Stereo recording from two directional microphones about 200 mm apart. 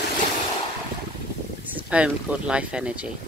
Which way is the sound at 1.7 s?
5° right (ahead or behind).